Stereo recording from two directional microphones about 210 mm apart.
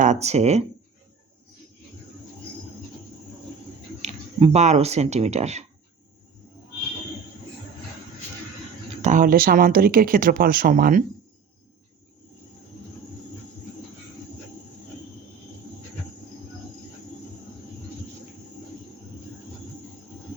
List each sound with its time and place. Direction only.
0.0 s speech: 35° right (ahead or behind)
4.0 s speech: 30° right (ahead or behind)
9.0 s speech: 35° right (ahead or behind)